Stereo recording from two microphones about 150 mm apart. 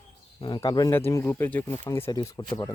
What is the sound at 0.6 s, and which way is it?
Speech, 25° left (ahead or behind).